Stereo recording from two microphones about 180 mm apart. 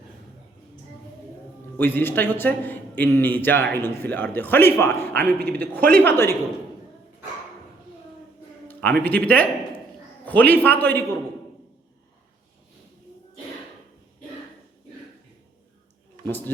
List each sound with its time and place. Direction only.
1.8 s a man's voice: 10° left (ahead or behind)
8.6 s a man's voice: 10° left (ahead or behind)